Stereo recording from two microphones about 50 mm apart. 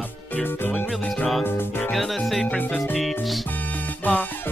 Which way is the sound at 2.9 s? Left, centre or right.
Centre.